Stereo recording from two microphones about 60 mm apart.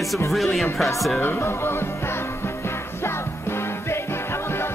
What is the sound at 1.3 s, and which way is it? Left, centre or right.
Music, left.